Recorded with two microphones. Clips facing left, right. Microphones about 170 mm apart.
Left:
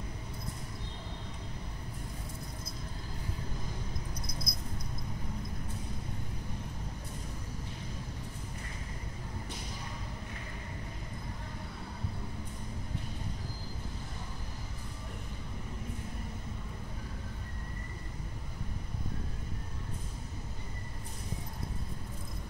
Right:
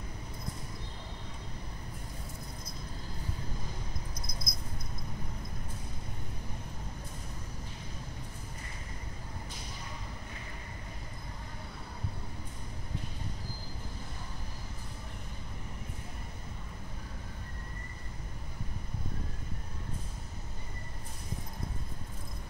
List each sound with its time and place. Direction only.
4.5 s dog: 60° left (ahead or behind)